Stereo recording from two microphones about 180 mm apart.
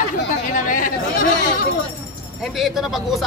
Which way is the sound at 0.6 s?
50° left (ahead or behind).